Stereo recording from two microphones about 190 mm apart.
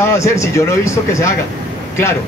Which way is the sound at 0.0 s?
15° left (ahead or behind).